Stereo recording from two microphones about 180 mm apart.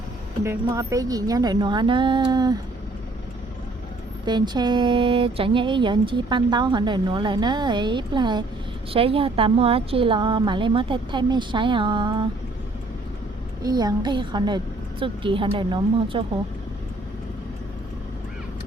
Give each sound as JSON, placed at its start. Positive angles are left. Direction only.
{"t": 0.4, "sound": "speech", "side_deg": -15}
{"t": 4.3, "sound": "speech", "side_deg": -25}
{"t": 13.6, "sound": "speech", "side_deg": -20}